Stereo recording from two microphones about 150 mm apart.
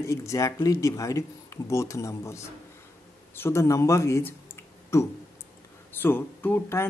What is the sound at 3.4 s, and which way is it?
Speech, 20° left (ahead or behind).